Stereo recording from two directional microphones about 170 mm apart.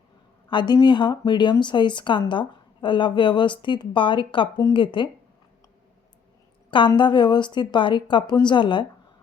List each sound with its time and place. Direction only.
0.4 s speech: 25° left (ahead or behind)
6.7 s speech: 30° left (ahead or behind)